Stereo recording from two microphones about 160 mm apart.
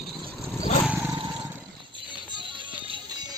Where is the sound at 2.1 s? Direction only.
30° right (ahead or behind).